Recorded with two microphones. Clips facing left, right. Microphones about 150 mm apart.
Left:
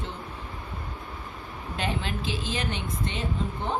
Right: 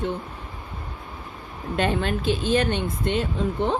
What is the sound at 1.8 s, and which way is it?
Speech, 60° right (ahead or behind).